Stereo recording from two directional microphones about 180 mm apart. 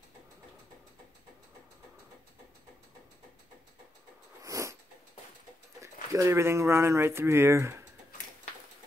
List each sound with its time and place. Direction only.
4.4 s cat: 15° right (ahead or behind)
6.1 s speech: 15° right (ahead or behind)